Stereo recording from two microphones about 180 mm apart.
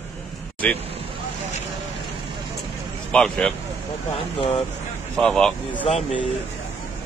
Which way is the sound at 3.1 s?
5° left (ahead or behind).